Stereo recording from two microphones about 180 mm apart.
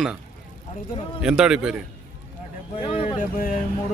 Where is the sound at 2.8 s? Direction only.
30° left (ahead or behind).